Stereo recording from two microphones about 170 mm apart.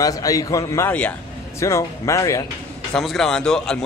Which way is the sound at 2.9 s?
Centre (ahead or behind).